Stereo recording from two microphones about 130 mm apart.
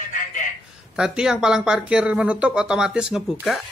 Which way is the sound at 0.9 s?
5° right (ahead or behind).